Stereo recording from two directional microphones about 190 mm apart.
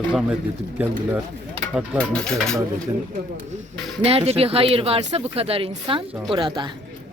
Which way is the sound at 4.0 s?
30° right (ahead or behind).